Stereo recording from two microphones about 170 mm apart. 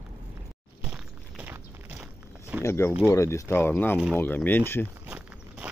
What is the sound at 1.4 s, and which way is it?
Walk, 10° right (ahead or behind).